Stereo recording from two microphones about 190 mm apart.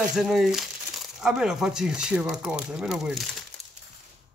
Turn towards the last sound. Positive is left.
turn(degrees=0)  # may be behind; listen again after turning